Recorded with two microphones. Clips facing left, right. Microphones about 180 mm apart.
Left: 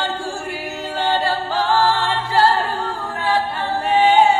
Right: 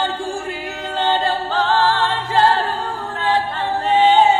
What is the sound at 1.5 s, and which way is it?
A capella, 10° left (ahead or behind).